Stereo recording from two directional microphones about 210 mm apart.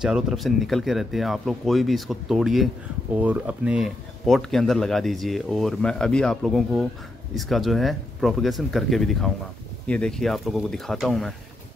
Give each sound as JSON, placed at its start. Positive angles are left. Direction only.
{"t": 0.0, "sound": "speech", "side_deg": 0}